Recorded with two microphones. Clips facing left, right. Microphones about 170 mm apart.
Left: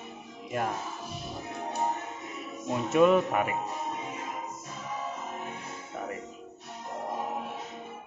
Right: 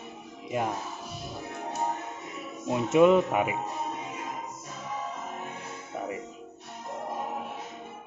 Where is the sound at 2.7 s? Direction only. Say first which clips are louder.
Right 2 dB; 15° right (ahead or behind).